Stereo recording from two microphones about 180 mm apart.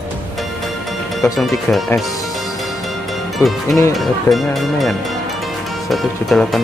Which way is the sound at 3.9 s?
Centre (ahead or behind).